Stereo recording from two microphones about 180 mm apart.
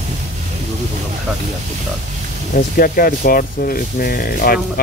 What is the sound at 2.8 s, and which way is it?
Speech, 55° left (ahead or behind).